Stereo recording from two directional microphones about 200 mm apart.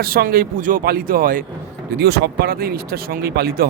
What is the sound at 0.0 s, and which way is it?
Speech, 45° right (ahead or behind).